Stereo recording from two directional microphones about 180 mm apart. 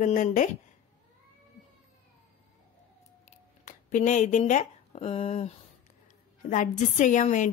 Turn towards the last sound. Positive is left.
turn(degrees=45)  # may be behind; listen again after turning